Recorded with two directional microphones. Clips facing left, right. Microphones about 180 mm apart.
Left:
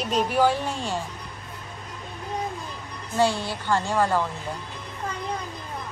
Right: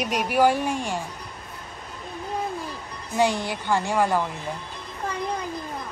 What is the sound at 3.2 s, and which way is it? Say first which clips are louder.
A woman's voice: even; 15° right (ahead or behind).